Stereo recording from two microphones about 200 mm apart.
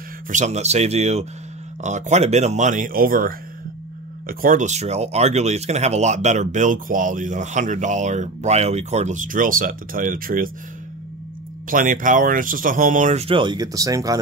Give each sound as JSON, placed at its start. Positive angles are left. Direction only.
{"t": 0.3, "sound": "speech", "side_deg": -35}
{"t": 11.7, "sound": "speech", "side_deg": -40}